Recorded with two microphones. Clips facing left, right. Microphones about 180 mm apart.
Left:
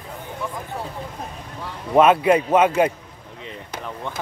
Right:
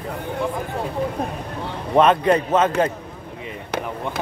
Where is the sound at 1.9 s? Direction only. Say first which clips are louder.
Left 1 dB; 10° left (ahead or behind).